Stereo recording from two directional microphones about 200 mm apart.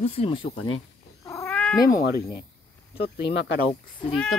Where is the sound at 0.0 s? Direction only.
30° left (ahead or behind).